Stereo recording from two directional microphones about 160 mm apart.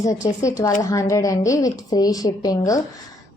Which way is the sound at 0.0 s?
20° left (ahead or behind).